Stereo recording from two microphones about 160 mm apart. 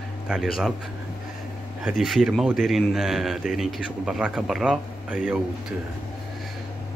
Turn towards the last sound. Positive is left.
turn(degrees=-5)  # may be behind; listen again after turning